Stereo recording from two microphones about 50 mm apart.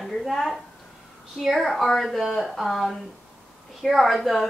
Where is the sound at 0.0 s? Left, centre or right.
Centre.